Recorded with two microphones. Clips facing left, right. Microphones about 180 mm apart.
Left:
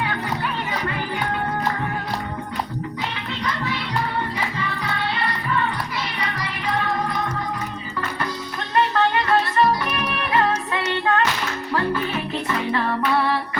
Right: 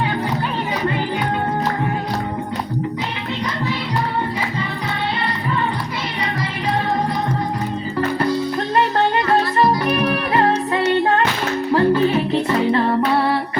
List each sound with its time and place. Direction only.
9.6 s music: 35° right (ahead or behind)